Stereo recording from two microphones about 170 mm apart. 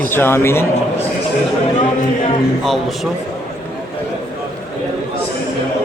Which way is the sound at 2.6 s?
Centre (ahead or behind).